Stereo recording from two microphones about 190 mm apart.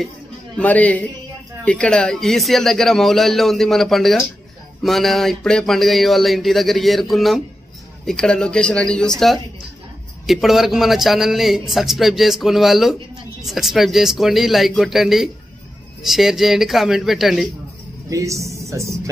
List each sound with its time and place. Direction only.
0.6 s a man's voice: 10° left (ahead or behind)
10.2 s a man's voice: centre (ahead or behind)
18.1 s speech: 15° right (ahead or behind)